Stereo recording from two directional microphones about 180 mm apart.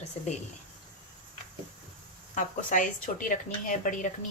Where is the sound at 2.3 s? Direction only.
45° left (ahead or behind).